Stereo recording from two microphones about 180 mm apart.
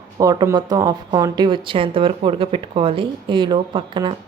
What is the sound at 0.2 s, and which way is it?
Speech, 20° right (ahead or behind).